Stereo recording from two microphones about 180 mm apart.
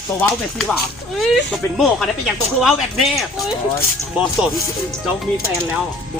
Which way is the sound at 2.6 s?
Centre (ahead or behind).